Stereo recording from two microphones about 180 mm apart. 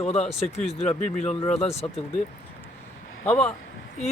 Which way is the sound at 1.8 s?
20° left (ahead or behind).